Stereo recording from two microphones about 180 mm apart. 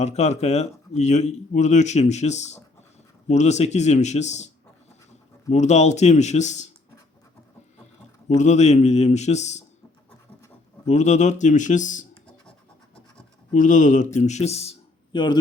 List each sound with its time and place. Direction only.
0.0 s speech: 40° left (ahead or behind)
5.5 s speech: 40° left (ahead or behind)
8.3 s speech: 40° left (ahead or behind)
10.8 s speech: 40° left (ahead or behind)
13.5 s a man's voice: 45° left (ahead or behind); by 15.4 s 25° left (ahead or behind)